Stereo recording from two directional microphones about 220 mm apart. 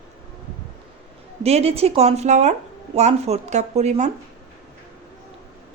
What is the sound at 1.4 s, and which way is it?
A woman's voice, 30° right (ahead or behind).